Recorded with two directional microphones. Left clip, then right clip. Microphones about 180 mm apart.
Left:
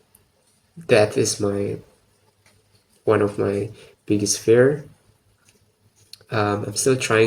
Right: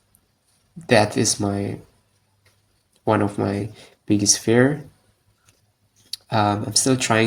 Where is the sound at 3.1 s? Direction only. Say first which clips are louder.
Left 2 dB; 40° right (ahead or behind).